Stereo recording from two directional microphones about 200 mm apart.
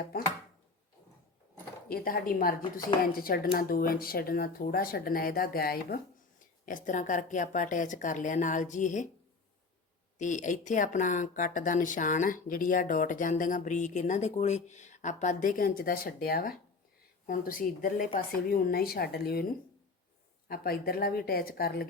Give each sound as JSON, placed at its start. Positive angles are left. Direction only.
{"t": 1.9, "sound": "speech", "side_deg": 45}
{"t": 10.2, "sound": "speech", "side_deg": 40}
{"t": 20.5, "sound": "speech", "side_deg": 50}